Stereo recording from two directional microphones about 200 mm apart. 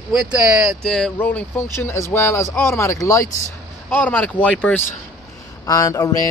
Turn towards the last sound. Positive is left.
turn(degrees=15)  # may be behind; listen again after turning